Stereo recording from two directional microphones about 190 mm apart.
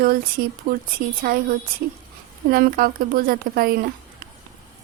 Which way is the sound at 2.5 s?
50° right (ahead or behind).